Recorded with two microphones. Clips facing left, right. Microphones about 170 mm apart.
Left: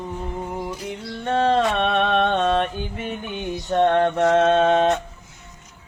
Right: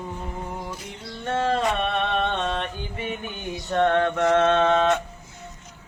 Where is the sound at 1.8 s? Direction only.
75° left (ahead or behind).